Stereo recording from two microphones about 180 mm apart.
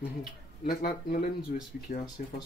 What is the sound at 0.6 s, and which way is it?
Speech, 55° left (ahead or behind).